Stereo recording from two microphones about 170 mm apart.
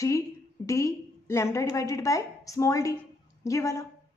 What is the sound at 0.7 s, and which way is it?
A woman's voice, 20° left (ahead or behind).